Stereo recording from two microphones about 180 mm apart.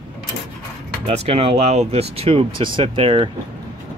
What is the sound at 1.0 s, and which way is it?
Speech, 35° right (ahead or behind).